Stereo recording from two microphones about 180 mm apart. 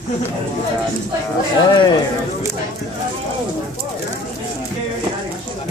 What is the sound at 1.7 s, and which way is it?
Speech, 25° left (ahead or behind).